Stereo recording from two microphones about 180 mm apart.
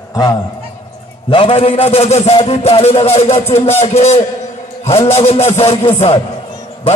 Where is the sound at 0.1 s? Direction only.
20° left (ahead or behind).